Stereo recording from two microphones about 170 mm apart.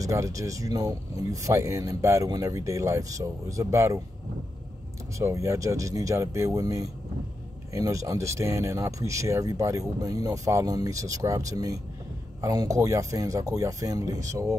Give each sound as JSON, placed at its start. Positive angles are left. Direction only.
{"t": 0.0, "sound": "speech", "side_deg": -20}
{"t": 5.2, "sound": "speech", "side_deg": -15}